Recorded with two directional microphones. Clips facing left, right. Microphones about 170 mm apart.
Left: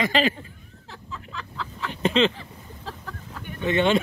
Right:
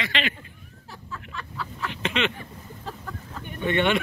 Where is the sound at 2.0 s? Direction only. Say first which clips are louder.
Left 7 dB; 30° left (ahead or behind).